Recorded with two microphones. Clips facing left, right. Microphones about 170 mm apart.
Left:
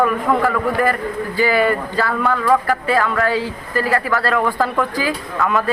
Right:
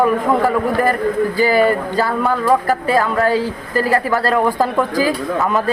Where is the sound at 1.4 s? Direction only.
40° right (ahead or behind).